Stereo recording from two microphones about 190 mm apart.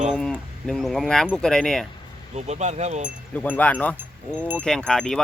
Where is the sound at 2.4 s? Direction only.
35° right (ahead or behind).